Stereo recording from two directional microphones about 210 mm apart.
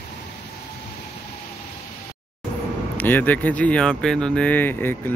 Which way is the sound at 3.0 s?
10° left (ahead or behind).